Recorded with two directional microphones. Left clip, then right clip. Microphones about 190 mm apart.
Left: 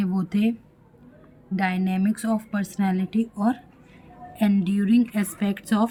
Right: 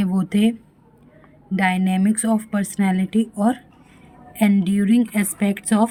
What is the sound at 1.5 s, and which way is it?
A woman's voice, 30° right (ahead or behind).